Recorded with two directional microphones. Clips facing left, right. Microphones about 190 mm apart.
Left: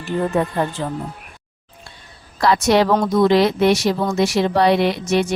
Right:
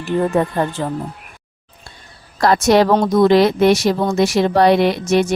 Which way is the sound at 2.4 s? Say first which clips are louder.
Right 3 dB; 45° right (ahead or behind).